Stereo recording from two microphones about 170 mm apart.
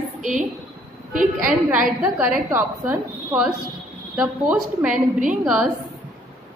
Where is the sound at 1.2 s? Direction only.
10° right (ahead or behind).